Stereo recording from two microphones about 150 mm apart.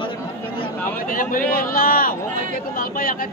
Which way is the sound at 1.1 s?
65° left (ahead or behind).